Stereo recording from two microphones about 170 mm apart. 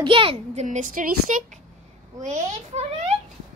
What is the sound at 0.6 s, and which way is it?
A child's voice, 50° right (ahead or behind).